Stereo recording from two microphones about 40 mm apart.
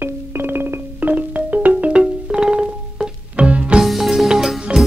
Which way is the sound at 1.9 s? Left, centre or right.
Right.